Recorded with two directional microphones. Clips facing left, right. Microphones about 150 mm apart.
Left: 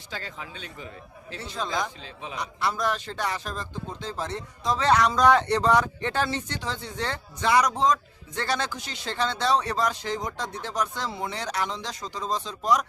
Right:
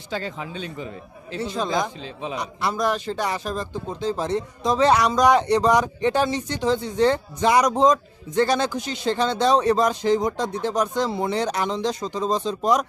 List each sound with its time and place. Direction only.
0.1 s a man's voice: 20° right (ahead or behind)
11.1 s speech: 30° right (ahead or behind)